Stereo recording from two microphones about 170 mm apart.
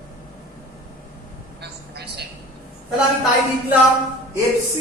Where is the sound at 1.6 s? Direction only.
75° right (ahead or behind).